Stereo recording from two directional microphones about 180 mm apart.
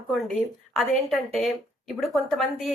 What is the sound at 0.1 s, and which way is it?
A woman's voice, centre (ahead or behind).